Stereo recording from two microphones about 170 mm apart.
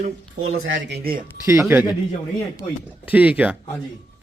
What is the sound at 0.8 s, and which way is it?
Speech, 85° right.